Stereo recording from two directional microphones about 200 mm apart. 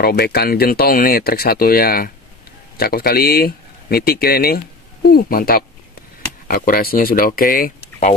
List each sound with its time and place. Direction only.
0.0 s speech: 50° left (ahead or behind)